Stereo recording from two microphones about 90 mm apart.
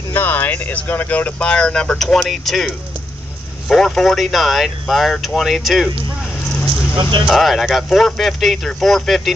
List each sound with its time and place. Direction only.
0.1 s speech: 20° left (ahead or behind); by 5.9 s centre (ahead or behind)
7.0 s speech: 60° right (ahead or behind)
7.2 s speech: centre (ahead or behind)